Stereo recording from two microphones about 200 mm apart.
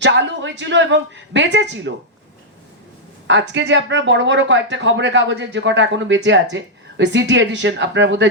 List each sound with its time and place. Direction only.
0.0 s speech: 65° right (ahead or behind)
3.2 s speech: 65° right (ahead or behind)